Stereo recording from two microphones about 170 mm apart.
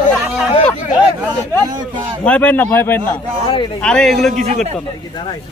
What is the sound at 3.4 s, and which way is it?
Speech, 30° left (ahead or behind).